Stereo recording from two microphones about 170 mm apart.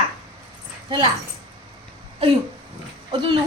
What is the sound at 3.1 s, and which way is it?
Speech, 30° right (ahead or behind).